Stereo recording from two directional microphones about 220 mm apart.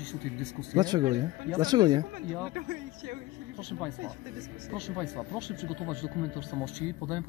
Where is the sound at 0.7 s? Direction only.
20° right (ahead or behind).